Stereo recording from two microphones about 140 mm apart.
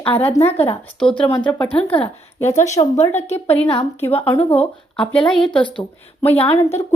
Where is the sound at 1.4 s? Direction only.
10° left (ahead or behind).